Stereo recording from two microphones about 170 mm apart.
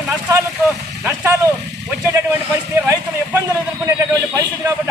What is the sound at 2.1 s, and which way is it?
A man's voice, 15° right (ahead or behind).